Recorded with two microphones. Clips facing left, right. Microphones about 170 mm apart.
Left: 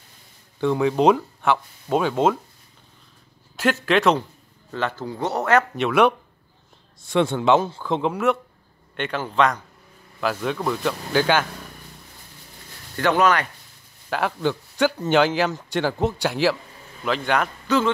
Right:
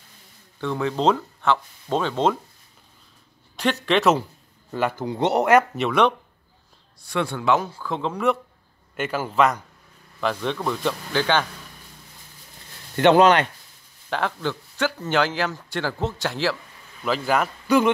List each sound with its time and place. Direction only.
0.6 s speech: 15° left (ahead or behind)
3.5 s speech: 5° left (ahead or behind)
4.6 s speech: 10° right (ahead or behind)
5.8 s speech: 5° left (ahead or behind)
7.1 s a man's voice: 20° left (ahead or behind)
8.1 s speech: centre (ahead or behind)
12.9 s speech: 25° right (ahead or behind)
14.1 s speech: 10° left (ahead or behind)
17.0 s speech: 5° right (ahead or behind)